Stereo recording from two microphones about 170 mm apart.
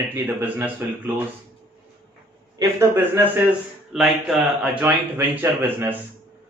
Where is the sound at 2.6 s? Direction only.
15° right (ahead or behind).